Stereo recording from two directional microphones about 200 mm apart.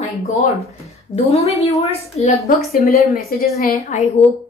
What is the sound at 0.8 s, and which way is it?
A woman's voice, 30° left (ahead or behind).